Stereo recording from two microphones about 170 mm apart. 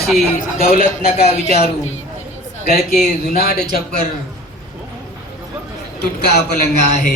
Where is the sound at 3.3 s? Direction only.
60° left (ahead or behind).